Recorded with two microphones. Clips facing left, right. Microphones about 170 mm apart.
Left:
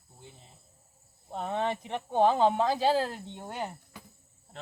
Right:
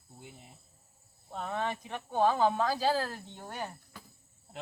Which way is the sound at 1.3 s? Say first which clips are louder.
Left 4 dB; 25° left (ahead or behind).